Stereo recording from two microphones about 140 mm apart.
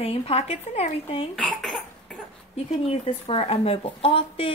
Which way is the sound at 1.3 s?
5° left (ahead or behind).